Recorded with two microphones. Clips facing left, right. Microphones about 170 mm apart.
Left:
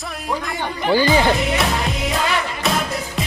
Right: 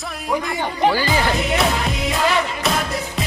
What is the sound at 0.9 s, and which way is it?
Speech, 20° left (ahead or behind).